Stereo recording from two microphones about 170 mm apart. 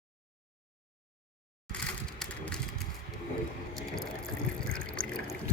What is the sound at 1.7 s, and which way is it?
Crushing, 5° left (ahead or behind).